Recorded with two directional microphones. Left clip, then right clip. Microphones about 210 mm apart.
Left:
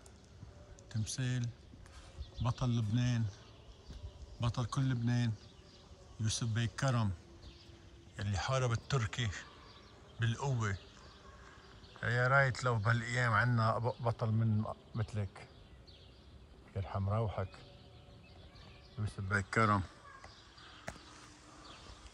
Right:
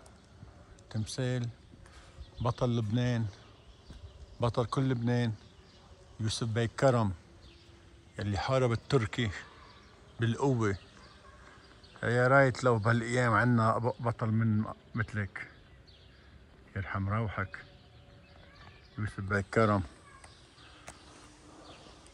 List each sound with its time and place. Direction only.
1.0 s a man's voice: 15° left (ahead or behind)
4.4 s a man's voice: 15° left (ahead or behind)
8.2 s a man's voice: 10° left (ahead or behind)
12.1 s a man's voice: 5° left (ahead or behind)
16.7 s speech: 5° left (ahead or behind)
18.9 s speech: centre (ahead or behind)